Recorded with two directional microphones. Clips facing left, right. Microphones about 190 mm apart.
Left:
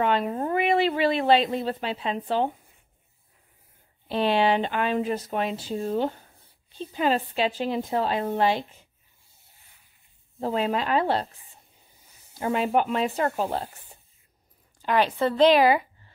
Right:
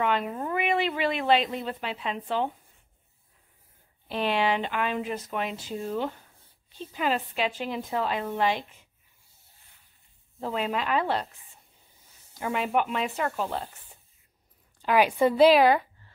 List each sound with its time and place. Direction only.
0.0 s speech: 35° left (ahead or behind)
4.1 s speech: 30° left (ahead or behind)
10.4 s speech: 35° left (ahead or behind)
12.4 s speech: 35° left (ahead or behind)
15.0 s a woman's voice: 10° right (ahead or behind)
15.6 s a woman's voice: 5° left (ahead or behind)